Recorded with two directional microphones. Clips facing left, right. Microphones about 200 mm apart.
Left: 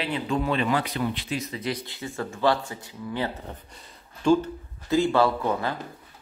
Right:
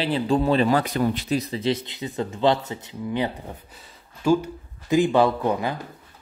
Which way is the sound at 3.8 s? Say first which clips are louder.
Even; 10° right (ahead or behind).